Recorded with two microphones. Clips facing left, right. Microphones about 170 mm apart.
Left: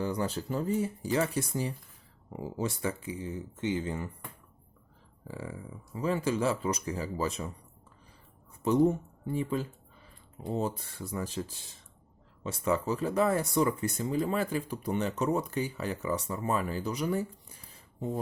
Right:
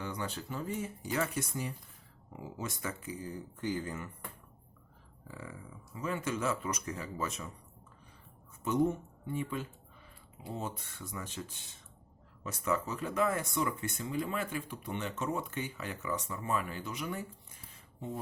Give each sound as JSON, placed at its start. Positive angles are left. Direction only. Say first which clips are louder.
{"t": 0.0, "sound": "speech", "louder": "left 7 dB", "side_deg": 35}
{"t": 5.3, "sound": "speech", "louder": "left 6 dB", "side_deg": 30}
{"t": 8.6, "sound": "speech", "louder": "left 5 dB", "side_deg": 35}